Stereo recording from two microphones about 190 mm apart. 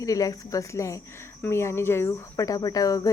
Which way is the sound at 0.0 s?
20° left (ahead or behind).